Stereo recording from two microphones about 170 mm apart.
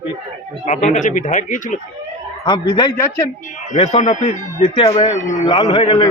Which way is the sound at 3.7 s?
40° left (ahead or behind).